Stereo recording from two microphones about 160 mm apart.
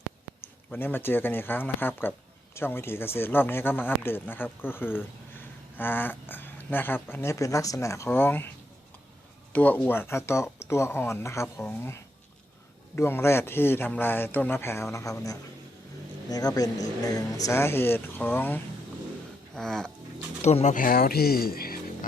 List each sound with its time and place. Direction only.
0.7 s speech: 10° left (ahead or behind)
9.5 s speech: 10° left (ahead or behind)
19.5 s music: 5° left (ahead or behind)
20.4 s speech: 40° left (ahead or behind)
20.7 s speech: 65° left (ahead or behind)